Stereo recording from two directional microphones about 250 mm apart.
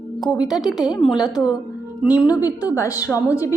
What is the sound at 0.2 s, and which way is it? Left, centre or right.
Speech, centre.